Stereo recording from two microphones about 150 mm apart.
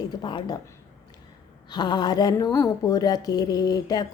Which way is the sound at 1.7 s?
25° left (ahead or behind).